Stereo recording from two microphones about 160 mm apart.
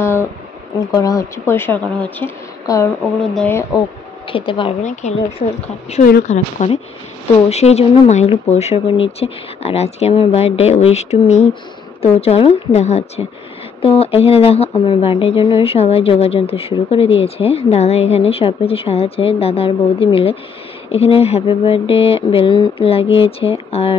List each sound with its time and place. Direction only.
0.0 s a sound: 15° left (ahead or behind)
0.7 s a woman's voice: 20° left (ahead or behind)
2.6 s speech: 20° left (ahead or behind)
4.3 s speech: 35° left (ahead or behind)
5.0 s speech: 45° left (ahead or behind)